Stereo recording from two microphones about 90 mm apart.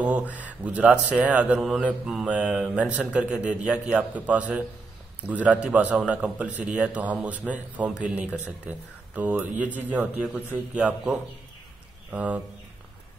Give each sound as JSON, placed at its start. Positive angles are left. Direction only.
{"t": 0.0, "sound": "a man's voice", "side_deg": -15}